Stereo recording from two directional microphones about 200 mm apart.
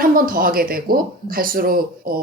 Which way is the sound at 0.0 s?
45° right (ahead or behind).